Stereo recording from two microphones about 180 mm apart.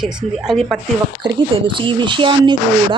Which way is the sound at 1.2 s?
25° right (ahead or behind).